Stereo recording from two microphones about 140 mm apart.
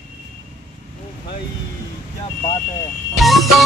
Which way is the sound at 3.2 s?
Centre (ahead or behind).